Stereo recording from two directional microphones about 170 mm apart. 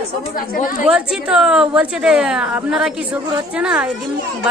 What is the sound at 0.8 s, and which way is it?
A man's voice, 5° right (ahead or behind).